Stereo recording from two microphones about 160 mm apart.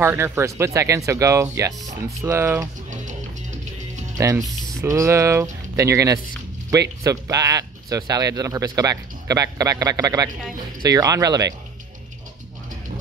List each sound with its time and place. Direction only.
0.0 s speech: 15° right (ahead or behind)
4.2 s speech: 20° right (ahead or behind)